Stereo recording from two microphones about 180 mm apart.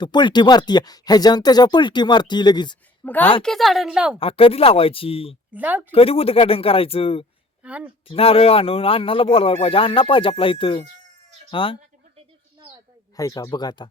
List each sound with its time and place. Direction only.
0.0 s speech: 25° left (ahead or behind)
3.0 s a woman's voice: 10° left (ahead or behind)
4.2 s speech: 30° left (ahead or behind)
5.5 s a woman's voice: 10° right (ahead or behind)
5.9 s speech: 30° left (ahead or behind)
7.6 s speech: 5° right (ahead or behind)
8.0 s speech: 30° left (ahead or behind)
13.1 s speech: 20° left (ahead or behind)